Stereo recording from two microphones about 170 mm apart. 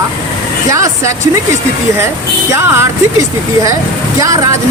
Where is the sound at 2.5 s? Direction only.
15° right (ahead or behind).